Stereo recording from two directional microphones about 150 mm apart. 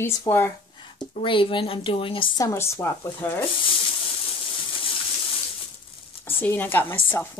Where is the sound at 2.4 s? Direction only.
15° left (ahead or behind).